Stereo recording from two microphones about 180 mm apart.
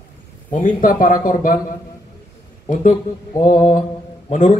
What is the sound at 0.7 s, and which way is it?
Speech, 50° left (ahead or behind).